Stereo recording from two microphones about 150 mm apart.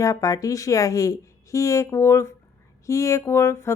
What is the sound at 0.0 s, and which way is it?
Speech, 20° left (ahead or behind).